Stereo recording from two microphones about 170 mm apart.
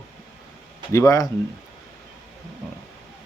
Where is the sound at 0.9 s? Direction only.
20° left (ahead or behind).